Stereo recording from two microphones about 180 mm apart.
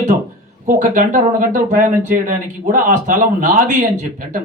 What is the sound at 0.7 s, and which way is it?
Speech, 45° right (ahead or behind).